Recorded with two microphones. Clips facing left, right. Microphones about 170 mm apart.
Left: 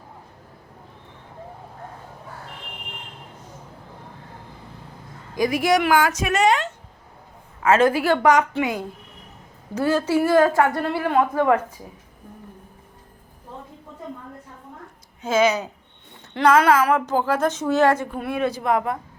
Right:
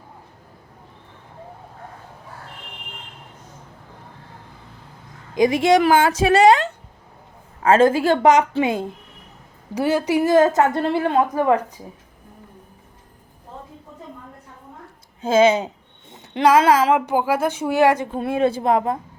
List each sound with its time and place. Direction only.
5.3 s a woman's voice: 25° right (ahead or behind)
15.2 s a woman's voice: 30° right (ahead or behind)
16.1 s a sound: 15° right (ahead or behind)
17.1 s speech: 10° right (ahead or behind)
18.1 s a woman's voice: 25° right (ahead or behind)